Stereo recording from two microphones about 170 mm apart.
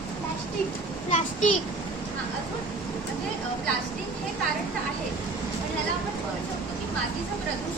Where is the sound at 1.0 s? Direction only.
45° left (ahead or behind).